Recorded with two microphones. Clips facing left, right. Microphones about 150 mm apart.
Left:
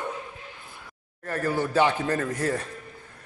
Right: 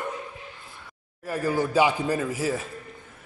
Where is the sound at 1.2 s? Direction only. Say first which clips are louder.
Right 1 dB; 10° right (ahead or behind).